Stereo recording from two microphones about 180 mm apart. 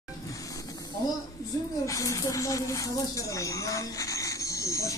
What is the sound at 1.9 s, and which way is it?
Speech, 15° left (ahead or behind).